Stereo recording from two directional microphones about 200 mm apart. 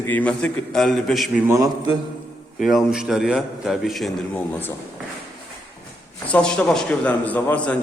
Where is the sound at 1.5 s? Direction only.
15° right (ahead or behind).